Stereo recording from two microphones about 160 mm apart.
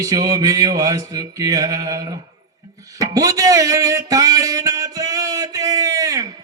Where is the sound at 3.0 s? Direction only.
20° right (ahead or behind).